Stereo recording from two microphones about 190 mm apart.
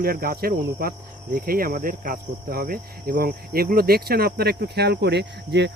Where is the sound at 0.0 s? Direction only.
50° right (ahead or behind).